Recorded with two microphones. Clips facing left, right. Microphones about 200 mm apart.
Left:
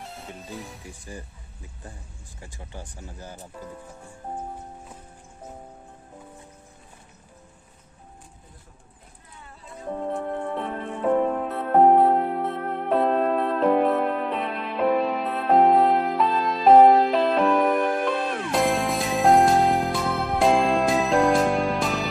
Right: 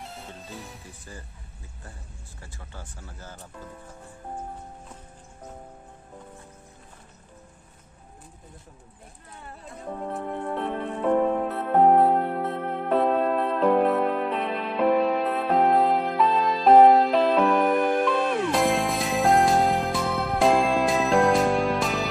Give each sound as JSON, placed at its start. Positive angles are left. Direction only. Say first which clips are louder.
{"t": 1.1, "sound": "speech", "louder": "left 5 dB", "side_deg": 15}
{"t": 2.4, "sound": "speech", "louder": "left 4 dB", "side_deg": 15}
{"t": 10.0, "sound": "music", "louder": "left 2 dB", "side_deg": 0}